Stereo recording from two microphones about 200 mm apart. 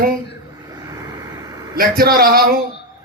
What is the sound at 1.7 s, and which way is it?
Speech, 50° right (ahead or behind).